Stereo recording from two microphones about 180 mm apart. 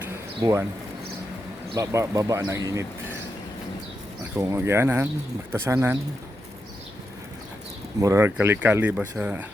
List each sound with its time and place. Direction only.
0.0 s a sound: 15° right (ahead or behind)
1.7 s speech: 15° right (ahead or behind)
4.4 s speech: 15° right (ahead or behind)
8.0 s speech: 15° right (ahead or behind)